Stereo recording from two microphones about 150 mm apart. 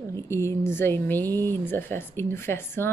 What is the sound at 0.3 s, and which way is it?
Speech, 20° left (ahead or behind).